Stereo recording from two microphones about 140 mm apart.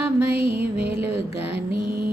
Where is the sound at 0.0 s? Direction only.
10° right (ahead or behind).